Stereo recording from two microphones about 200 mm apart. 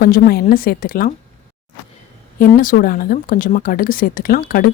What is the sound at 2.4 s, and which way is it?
A woman's voice, 45° left (ahead or behind).